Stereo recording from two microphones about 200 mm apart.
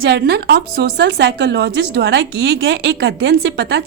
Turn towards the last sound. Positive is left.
turn(degrees=-55)  # may be behind; listen again after turning